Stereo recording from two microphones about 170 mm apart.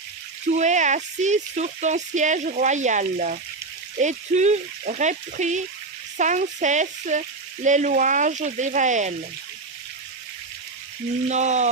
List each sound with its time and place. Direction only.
0.6 s speech: 45° right (ahead or behind)
11.3 s speech: 45° right (ahead or behind)